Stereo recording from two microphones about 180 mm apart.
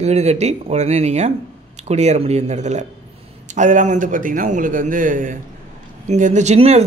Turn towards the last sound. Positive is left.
turn(degrees=-35)  # may be behind; listen again after turning